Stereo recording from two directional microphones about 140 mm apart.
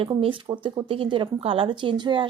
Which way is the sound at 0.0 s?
40° right (ahead or behind).